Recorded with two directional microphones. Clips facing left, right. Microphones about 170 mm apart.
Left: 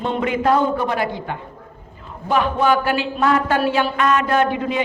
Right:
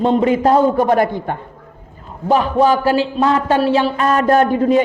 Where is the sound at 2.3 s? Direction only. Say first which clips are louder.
Right 4 dB; 35° right (ahead or behind).